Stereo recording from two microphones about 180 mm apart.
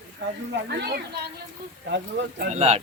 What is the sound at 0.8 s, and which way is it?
Speech, 65° right (ahead or behind).